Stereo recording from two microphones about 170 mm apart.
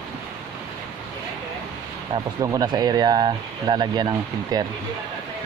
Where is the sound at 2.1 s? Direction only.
25° right (ahead or behind).